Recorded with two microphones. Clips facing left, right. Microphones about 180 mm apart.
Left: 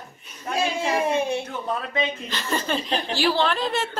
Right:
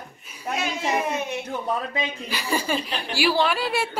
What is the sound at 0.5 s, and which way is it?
Speech, 30° left (ahead or behind).